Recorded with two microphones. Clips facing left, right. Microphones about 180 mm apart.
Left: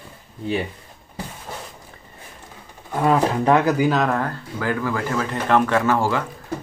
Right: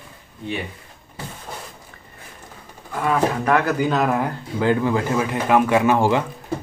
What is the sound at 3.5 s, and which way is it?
Speech, 15° left (ahead or behind).